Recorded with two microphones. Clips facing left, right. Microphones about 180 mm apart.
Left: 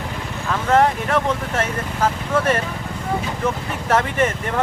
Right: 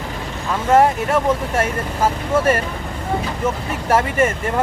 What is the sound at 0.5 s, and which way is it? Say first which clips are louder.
Speech: right 2 dB; 10° right (ahead or behind).